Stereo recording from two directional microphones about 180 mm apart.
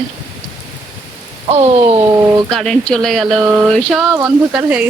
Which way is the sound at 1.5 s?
35° right (ahead or behind).